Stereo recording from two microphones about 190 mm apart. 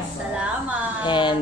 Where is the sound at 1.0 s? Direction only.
25° left (ahead or behind).